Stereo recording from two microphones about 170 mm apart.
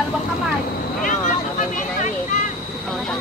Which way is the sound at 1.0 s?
50° left (ahead or behind).